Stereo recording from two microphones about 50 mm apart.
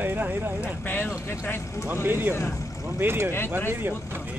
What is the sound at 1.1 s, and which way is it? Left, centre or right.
Speech, left.